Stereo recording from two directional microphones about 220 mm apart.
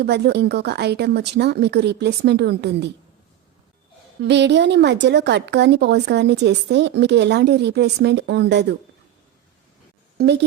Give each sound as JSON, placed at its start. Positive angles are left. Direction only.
{"t": 0.0, "sound": "a woman's voice", "side_deg": -50}
{"t": 4.2, "sound": "a woman's voice", "side_deg": -50}